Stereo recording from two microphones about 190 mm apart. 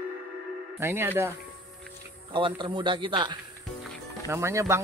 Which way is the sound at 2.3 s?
25° right (ahead or behind).